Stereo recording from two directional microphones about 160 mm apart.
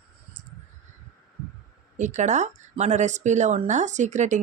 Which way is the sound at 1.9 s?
50° right (ahead or behind).